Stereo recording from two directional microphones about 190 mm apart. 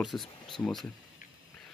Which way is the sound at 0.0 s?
Centre (ahead or behind).